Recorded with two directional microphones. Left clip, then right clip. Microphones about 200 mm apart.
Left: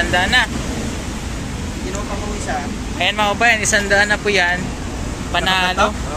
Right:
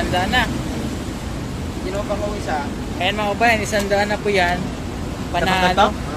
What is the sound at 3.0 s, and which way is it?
Speech, centre (ahead or behind).